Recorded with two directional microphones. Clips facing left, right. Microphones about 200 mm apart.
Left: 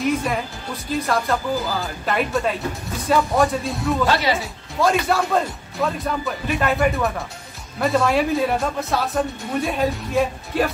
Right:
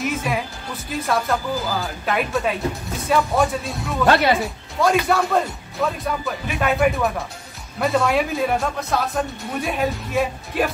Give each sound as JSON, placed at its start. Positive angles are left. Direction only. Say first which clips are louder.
{"t": 0.0, "sound": "speech", "louder": "left 2 dB", "side_deg": 0}
{"t": 4.0, "sound": "speech", "louder": "right 5 dB", "side_deg": -55}
{"t": 4.4, "sound": "speech", "louder": "right 1 dB", "side_deg": 0}